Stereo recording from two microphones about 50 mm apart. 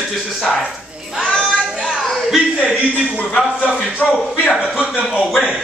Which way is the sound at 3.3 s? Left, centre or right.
Left.